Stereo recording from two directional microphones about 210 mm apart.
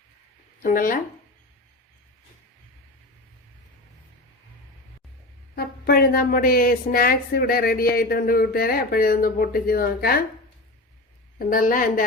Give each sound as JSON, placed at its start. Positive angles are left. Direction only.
{"t": 0.6, "sound": "a woman's voice", "side_deg": 40}
{"t": 5.5, "sound": "speech", "side_deg": 45}
{"t": 11.3, "sound": "a woman's voice", "side_deg": 40}